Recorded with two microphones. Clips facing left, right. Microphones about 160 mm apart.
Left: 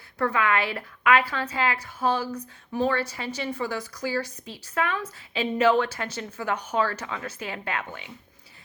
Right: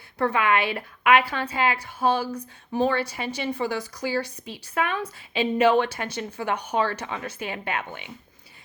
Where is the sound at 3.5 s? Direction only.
30° right (ahead or behind).